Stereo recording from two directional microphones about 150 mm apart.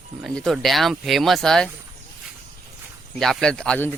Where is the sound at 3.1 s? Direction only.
Centre (ahead or behind).